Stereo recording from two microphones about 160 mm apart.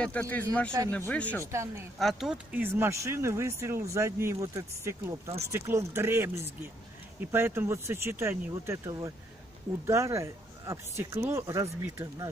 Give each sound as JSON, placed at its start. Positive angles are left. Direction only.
{"t": 0.0, "sound": "speech", "side_deg": 10}
{"t": 1.4, "sound": "speech", "side_deg": -15}
{"t": 2.0, "sound": "speech", "side_deg": 0}